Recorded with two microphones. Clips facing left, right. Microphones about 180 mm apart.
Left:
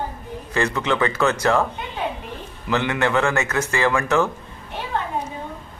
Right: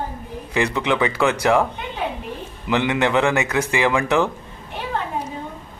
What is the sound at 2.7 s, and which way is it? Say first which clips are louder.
A man's voice: right 2 dB; 15° right (ahead or behind).